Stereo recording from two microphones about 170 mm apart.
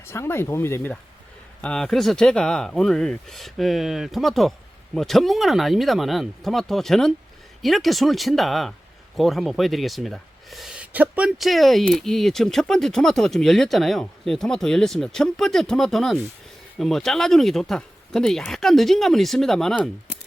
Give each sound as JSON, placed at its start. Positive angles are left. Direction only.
{"t": 0.0, "sound": "speech", "side_deg": 15}